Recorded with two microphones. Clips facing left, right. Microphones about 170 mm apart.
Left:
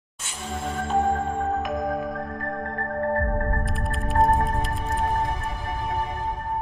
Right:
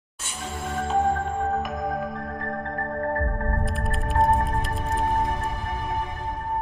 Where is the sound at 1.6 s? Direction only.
Centre (ahead or behind).